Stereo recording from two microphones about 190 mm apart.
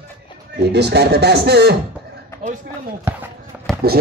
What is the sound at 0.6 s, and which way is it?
A man's voice, 60° right (ahead or behind).